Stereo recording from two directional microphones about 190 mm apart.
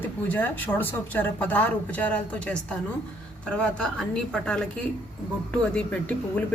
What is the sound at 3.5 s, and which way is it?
A woman's voice, 5° left (ahead or behind).